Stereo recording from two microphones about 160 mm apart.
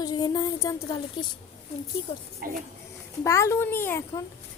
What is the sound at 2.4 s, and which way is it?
Speech, 65° right (ahead or behind).